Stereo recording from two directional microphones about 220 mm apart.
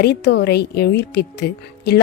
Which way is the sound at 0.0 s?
50° left (ahead or behind).